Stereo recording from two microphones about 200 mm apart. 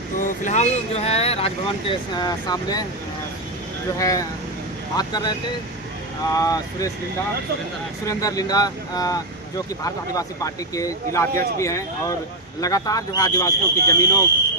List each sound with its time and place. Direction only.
0.2 s speech: 40° left (ahead or behind); by 2.8 s 20° left (ahead or behind)
3.9 s speech: 15° left (ahead or behind)
6.3 s speech: 15° left (ahead or behind)
8.0 s speech: 15° left (ahead or behind)